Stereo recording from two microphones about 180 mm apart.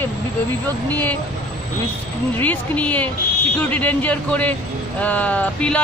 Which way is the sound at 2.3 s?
10° left (ahead or behind).